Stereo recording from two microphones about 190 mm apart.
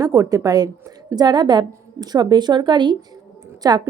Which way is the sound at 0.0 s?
20° right (ahead or behind).